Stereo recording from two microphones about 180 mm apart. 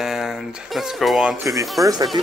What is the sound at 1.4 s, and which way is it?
Speech, 15° right (ahead or behind).